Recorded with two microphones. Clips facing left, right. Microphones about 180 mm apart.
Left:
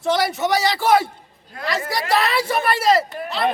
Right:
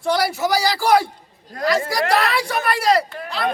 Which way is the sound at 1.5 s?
40° right (ahead or behind).